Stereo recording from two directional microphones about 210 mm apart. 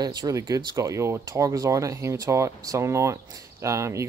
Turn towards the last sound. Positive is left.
turn(degrees=-15)  # may be behind; listen again after turning